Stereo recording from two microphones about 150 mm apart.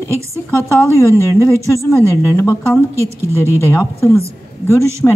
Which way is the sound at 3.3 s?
15° left (ahead or behind).